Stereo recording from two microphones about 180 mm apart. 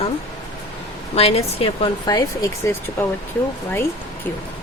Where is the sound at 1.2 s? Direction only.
35° left (ahead or behind); by 3.0 s 15° left (ahead or behind).